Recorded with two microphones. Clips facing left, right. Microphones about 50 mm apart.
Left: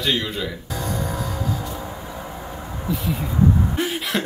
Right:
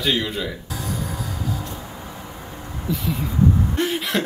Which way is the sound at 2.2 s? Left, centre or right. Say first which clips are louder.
Left 3 dB; centre.